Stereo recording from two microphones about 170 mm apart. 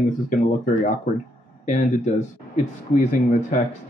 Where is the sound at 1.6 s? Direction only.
45° left (ahead or behind).